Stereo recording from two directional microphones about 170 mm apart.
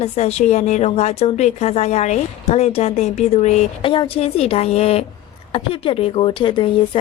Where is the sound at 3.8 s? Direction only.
30° left (ahead or behind).